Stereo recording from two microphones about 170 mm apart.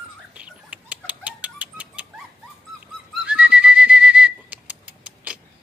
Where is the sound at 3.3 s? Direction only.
5° right (ahead or behind).